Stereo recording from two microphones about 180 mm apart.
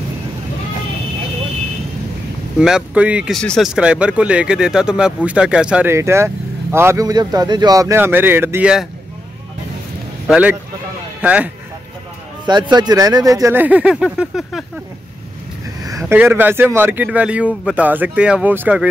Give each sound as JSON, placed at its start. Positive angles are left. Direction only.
{"t": 2.6, "sound": "speech", "side_deg": -5}
{"t": 10.2, "sound": "speech", "side_deg": -5}
{"t": 12.4, "sound": "speech", "side_deg": -25}
{"t": 16.1, "sound": "speech", "side_deg": -10}